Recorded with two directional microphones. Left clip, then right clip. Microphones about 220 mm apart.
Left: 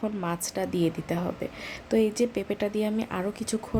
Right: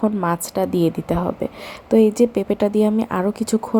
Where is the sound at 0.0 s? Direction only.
15° right (ahead or behind).